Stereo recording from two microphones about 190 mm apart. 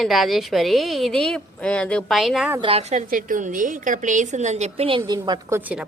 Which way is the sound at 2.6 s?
30° right (ahead or behind).